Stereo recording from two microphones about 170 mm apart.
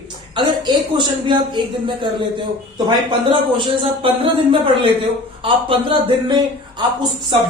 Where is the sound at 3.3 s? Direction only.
30° right (ahead or behind).